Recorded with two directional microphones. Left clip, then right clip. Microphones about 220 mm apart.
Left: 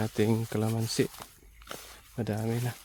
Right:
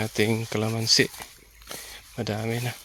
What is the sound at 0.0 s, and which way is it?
Speech, 20° left (ahead or behind).